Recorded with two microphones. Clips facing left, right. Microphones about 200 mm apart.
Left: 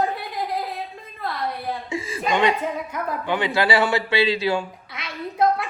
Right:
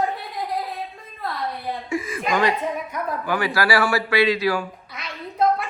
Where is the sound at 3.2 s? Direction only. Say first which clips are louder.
Left 1 dB; 20° left (ahead or behind).